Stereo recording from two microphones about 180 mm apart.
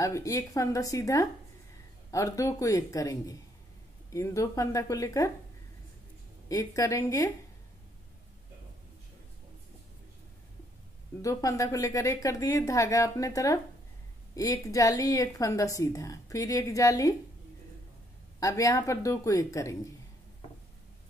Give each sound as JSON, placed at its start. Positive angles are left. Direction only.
{"t": 0.0, "sound": "a woman's voice", "side_deg": 15}
{"t": 6.5, "sound": "a woman's voice", "side_deg": 20}
{"t": 11.1, "sound": "a woman's voice", "side_deg": 20}
{"t": 18.4, "sound": "a woman's voice", "side_deg": 15}